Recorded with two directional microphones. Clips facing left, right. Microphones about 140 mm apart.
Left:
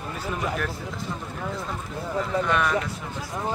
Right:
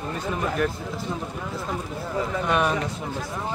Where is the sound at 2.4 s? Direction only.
20° right (ahead or behind).